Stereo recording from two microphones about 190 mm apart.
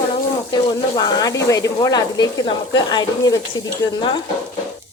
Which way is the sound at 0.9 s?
20° left (ahead or behind).